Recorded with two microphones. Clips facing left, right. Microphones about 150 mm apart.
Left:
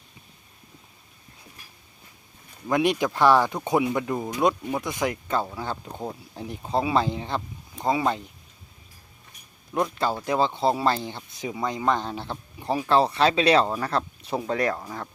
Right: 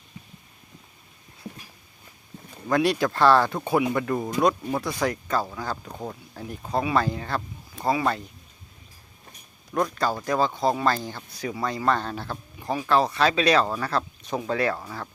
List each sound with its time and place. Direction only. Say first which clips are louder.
2.6 s speech: even; 20° left (ahead or behind)
9.9 s speech: even; 20° left (ahead or behind)